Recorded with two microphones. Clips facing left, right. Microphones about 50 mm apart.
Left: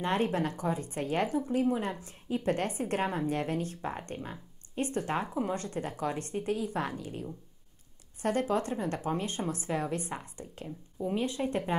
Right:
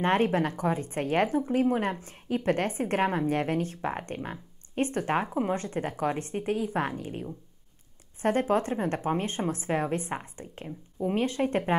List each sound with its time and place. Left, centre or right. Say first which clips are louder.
0.0 s speech: right 5 dB; right
11.1 s speech: right 4 dB; right